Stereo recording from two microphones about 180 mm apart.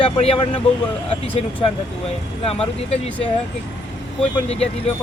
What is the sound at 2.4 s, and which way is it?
Speech, 30° left (ahead or behind).